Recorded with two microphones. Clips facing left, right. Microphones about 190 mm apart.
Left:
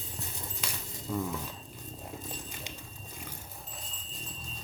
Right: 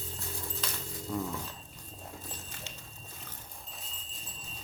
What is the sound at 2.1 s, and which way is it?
Dog, 20° left (ahead or behind).